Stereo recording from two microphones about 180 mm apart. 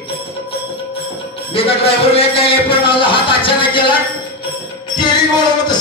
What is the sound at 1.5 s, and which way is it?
Speech, 30° left (ahead or behind).